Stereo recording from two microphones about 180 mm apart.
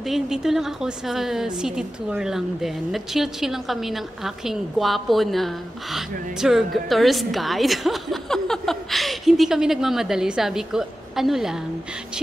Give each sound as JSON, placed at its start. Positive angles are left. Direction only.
{"t": 0.0, "sound": "a woman's voice", "side_deg": 0}